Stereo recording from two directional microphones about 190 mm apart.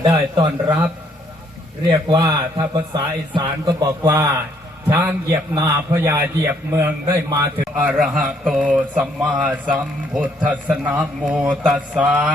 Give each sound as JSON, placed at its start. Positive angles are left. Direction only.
{"t": 0.0, "sound": "speech", "side_deg": -20}
{"t": 1.9, "sound": "a man's voice", "side_deg": -20}
{"t": 7.8, "sound": "a man's voice", "side_deg": -5}